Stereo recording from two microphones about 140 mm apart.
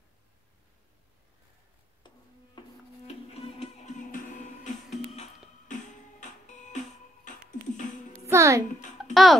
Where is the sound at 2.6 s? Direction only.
30° left (ahead or behind).